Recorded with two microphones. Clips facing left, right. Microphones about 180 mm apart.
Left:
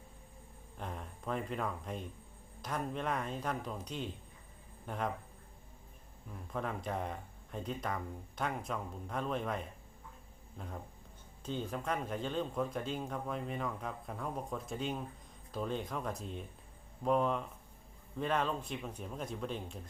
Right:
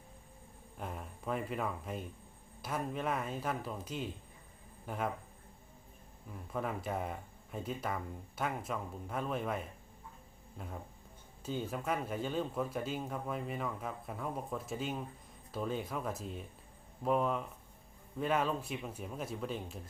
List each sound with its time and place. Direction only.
0.8 s speech: 5° right (ahead or behind)
6.3 s speech: 5° right (ahead or behind)